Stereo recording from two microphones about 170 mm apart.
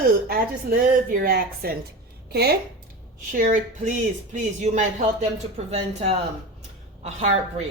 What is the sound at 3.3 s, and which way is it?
A woman's voice, 50° right (ahead or behind).